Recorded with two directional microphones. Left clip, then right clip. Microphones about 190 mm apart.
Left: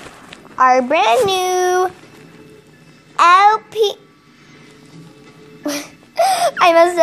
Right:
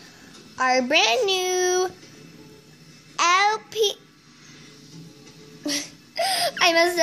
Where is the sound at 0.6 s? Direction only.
45° right (ahead or behind).